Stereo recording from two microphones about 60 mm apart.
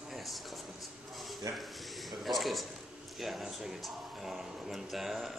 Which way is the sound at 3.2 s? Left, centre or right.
Centre.